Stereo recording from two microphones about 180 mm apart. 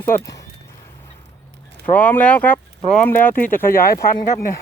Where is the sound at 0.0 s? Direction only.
15° left (ahead or behind).